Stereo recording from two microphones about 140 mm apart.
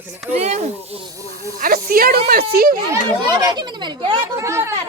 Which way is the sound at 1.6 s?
90° right.